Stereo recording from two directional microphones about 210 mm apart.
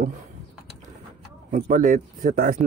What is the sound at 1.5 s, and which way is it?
Speech, 40° right (ahead or behind).